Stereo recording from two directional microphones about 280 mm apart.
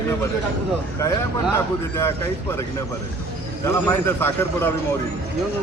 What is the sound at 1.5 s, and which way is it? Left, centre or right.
Speech, centre.